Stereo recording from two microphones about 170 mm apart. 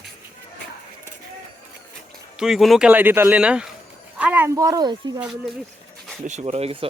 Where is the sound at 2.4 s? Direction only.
Centre (ahead or behind); by 4.9 s 20° right (ahead or behind).